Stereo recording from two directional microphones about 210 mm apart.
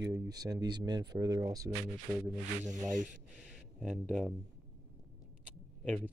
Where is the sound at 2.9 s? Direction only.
40° right (ahead or behind).